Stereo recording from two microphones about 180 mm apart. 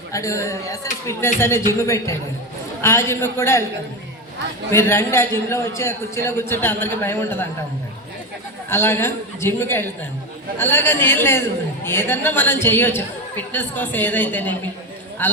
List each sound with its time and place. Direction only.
0.1 s a woman's voice: 15° left (ahead or behind)
2.8 s a woman's voice: 15° left (ahead or behind)
4.7 s a woman's voice: 15° left (ahead or behind)
8.7 s a woman's voice: 15° left (ahead or behind)